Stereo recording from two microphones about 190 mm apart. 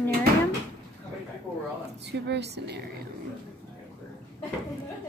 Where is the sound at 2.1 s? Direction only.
65° right (ahead or behind).